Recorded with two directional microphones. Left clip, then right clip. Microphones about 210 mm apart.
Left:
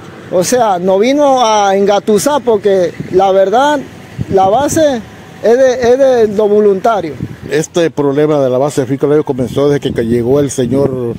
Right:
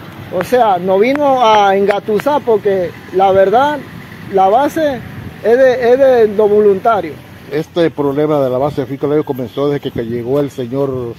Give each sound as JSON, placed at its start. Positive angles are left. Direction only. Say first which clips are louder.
{"t": 0.3, "sound": "speech", "louder": "left 1 dB", "side_deg": 55}